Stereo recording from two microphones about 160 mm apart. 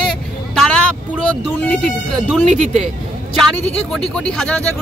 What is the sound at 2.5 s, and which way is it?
Speech, 40° right (ahead or behind).